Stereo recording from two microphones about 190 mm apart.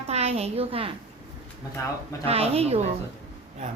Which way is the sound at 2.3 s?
30° right (ahead or behind).